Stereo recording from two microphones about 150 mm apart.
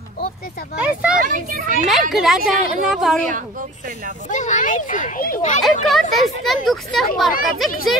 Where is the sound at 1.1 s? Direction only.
65° right (ahead or behind).